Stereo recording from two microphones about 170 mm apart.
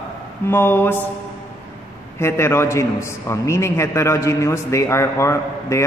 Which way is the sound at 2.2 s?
15° left (ahead or behind).